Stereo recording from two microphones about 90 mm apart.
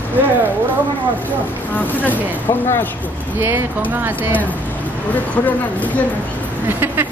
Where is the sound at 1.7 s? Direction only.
20° left (ahead or behind).